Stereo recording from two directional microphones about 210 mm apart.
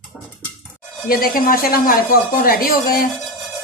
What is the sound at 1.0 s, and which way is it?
Speech, 45° left (ahead or behind).